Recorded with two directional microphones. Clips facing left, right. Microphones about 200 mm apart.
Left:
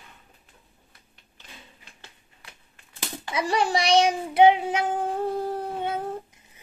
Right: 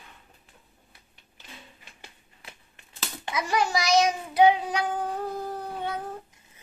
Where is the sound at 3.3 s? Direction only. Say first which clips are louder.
Left 2 dB; 30° left (ahead or behind).